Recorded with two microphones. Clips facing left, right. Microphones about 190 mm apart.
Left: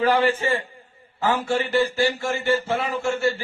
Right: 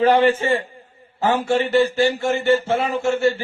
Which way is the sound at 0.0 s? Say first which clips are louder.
Right 4 dB; 25° right (ahead or behind).